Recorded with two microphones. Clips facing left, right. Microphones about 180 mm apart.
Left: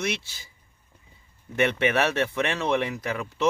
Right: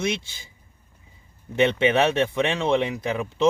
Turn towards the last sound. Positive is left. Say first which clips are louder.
# right 3 dB
turn(degrees=-20)  # may be behind; listen again after turning